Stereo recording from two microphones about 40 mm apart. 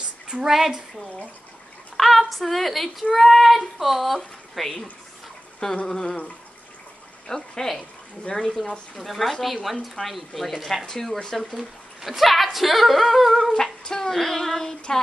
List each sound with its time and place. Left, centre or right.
0.5 s a woman's voice: centre
2.0 s a woman's voice: centre
4.6 s female singing: centre
5.9 s female singing: centre
7.2 s female singing: centre
8.3 s speech: left
8.9 s speech: centre
10.9 s female singing: centre
11.3 s speech: centre
13.4 s female singing: centre